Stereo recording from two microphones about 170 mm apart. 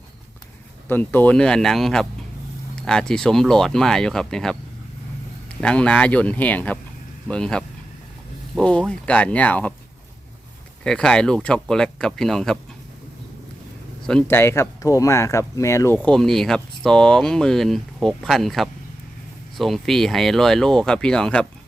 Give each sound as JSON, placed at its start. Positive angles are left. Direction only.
{"t": 0.9, "sound": "speech", "side_deg": 10}
{"t": 5.5, "sound": "speech", "side_deg": 5}
{"t": 10.8, "sound": "speech", "side_deg": 5}
{"t": 14.1, "sound": "speech", "side_deg": 10}
{"t": 16.0, "sound": "speech", "side_deg": 5}